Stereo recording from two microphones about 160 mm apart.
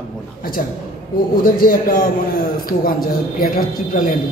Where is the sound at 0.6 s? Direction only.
60° left (ahead or behind).